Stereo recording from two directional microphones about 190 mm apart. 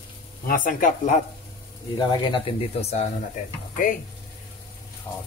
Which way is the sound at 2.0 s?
25° left (ahead or behind).